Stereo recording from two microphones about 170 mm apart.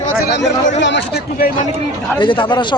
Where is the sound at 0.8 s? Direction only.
90° left; by 1.5 s 65° left (ahead or behind).